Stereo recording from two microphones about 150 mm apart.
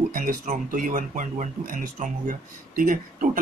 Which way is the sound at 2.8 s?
65° right (ahead or behind).